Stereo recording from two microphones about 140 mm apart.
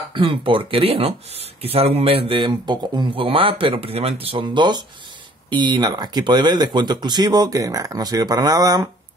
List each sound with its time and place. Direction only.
0.1 s speech: 35° right (ahead or behind)